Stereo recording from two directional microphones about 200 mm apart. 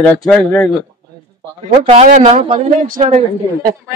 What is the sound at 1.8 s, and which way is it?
Speech, 35° right (ahead or behind).